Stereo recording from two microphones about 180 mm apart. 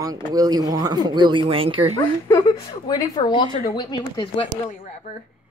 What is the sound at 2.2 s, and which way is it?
Speech, 20° left (ahead or behind).